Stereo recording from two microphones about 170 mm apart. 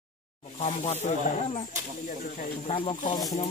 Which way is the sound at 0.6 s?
40° left (ahead or behind).